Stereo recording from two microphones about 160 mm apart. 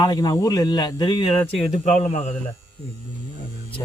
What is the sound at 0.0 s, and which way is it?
Speech, 25° left (ahead or behind).